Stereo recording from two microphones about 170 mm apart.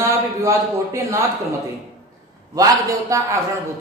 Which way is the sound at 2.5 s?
20° right (ahead or behind).